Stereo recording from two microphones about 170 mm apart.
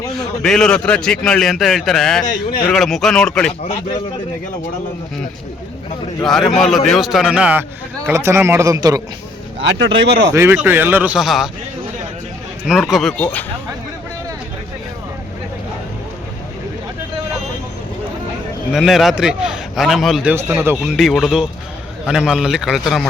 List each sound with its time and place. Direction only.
0.2 s a man's voice: centre (ahead or behind)
2.2 s speech: 55° left (ahead or behind)
2.6 s a man's voice: centre (ahead or behind)
6.6 s a man's voice: centre (ahead or behind); by 9.0 s 20° right (ahead or behind)
9.6 s speech: 90° right
10.3 s a man's voice: 15° right (ahead or behind)
12.6 s a man's voice: centre (ahead or behind)
18.7 s a man's voice: centre (ahead or behind)
20.3 s a man's voice: 15° right (ahead or behind)